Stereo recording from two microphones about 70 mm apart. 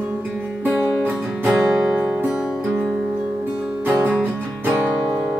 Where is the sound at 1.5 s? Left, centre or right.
Centre.